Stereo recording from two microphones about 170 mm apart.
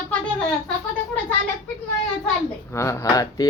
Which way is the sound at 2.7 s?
15° left (ahead or behind).